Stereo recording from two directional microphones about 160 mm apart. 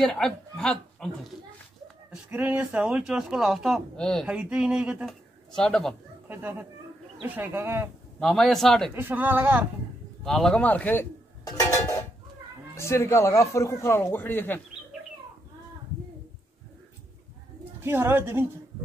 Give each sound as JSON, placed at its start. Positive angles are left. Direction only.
{"t": 0.0, "sound": "speech", "side_deg": 5}
{"t": 2.2, "sound": "speech", "side_deg": -10}
{"t": 4.3, "sound": "speech", "side_deg": -5}
{"t": 6.2, "sound": "speech", "side_deg": -15}
{"t": 8.2, "sound": "speech", "side_deg": 5}
{"t": 8.9, "sound": "speech", "side_deg": -10}
{"t": 10.2, "sound": "speech", "side_deg": 5}
{"t": 11.4, "sound": "a sound", "side_deg": 20}
{"t": 12.7, "sound": "speech", "side_deg": 15}
{"t": 17.7, "sound": "speech", "side_deg": -15}